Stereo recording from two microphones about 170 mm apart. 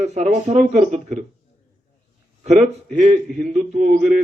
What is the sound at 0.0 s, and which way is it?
Speech, 40° right (ahead or behind).